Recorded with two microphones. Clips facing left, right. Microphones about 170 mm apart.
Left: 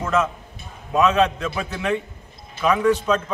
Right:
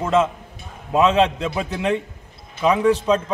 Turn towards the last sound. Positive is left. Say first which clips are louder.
# right 2 dB
turn(degrees=-30)  # may be behind; listen again after turning